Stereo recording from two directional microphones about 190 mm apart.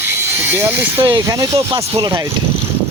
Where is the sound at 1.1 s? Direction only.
20° right (ahead or behind).